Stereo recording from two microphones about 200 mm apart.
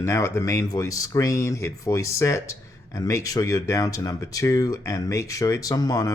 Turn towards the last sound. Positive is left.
turn(degrees=20)  # may be behind; listen again after turning